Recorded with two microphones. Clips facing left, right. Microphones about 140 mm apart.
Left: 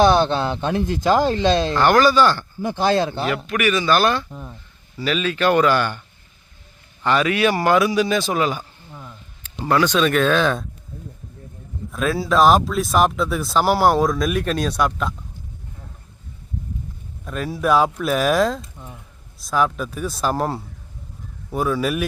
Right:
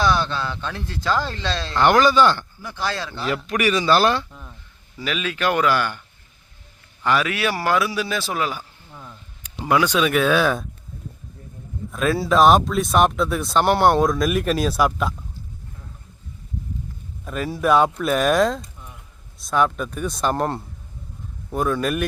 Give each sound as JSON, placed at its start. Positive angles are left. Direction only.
{"t": 0.0, "sound": "speech", "side_deg": 20}
{"t": 1.8, "sound": "speech", "side_deg": -20}
{"t": 2.6, "sound": "speech", "side_deg": 25}
{"t": 3.2, "sound": "speech", "side_deg": -30}
{"t": 4.3, "sound": "speech", "side_deg": 20}
{"t": 4.9, "sound": "speech", "side_deg": -10}
{"t": 7.0, "sound": "speech", "side_deg": -5}
{"t": 8.9, "sound": "a sound", "side_deg": 5}
{"t": 9.6, "sound": "speech", "side_deg": -10}
{"t": 11.9, "sound": "speech", "side_deg": 0}
{"t": 17.2, "sound": "speech", "side_deg": 0}